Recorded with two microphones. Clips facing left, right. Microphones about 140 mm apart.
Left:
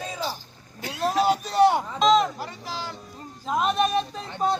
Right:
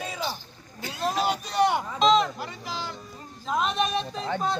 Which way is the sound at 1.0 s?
5° left (ahead or behind).